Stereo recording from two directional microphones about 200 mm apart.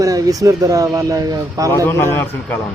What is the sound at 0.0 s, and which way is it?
Speech, 15° right (ahead or behind).